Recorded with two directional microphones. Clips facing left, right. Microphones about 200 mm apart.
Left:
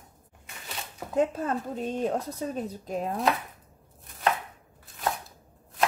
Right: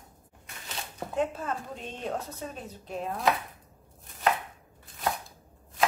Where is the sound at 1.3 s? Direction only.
40° left (ahead or behind).